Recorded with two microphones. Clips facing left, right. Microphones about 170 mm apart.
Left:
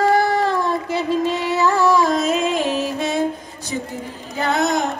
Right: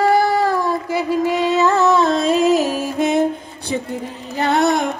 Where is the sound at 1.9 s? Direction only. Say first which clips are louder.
Right 2 dB; 30° right (ahead or behind).